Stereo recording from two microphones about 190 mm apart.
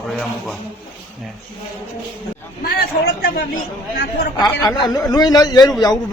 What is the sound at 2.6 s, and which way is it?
Speech, 55° left (ahead or behind).